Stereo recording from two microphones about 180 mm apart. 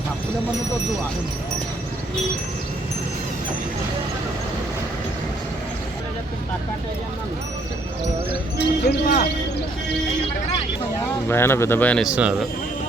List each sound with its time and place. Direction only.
8.3 s speech: 65° left (ahead or behind)
11.3 s speech: 15° left (ahead or behind)
12.0 s speech: 5° right (ahead or behind)